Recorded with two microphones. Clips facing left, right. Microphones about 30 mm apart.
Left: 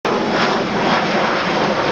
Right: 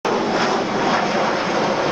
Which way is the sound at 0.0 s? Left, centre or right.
Left.